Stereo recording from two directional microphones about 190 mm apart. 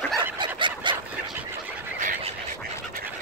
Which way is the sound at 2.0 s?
40° right (ahead or behind).